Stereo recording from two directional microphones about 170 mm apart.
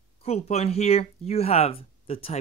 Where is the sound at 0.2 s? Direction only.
40° left (ahead or behind).